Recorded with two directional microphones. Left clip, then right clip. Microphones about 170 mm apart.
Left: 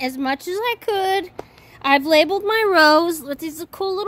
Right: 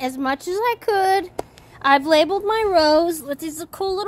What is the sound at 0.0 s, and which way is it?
A woman's voice, 15° left (ahead or behind).